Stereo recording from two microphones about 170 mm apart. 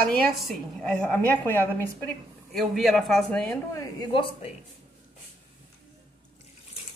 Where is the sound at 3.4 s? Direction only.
15° left (ahead or behind).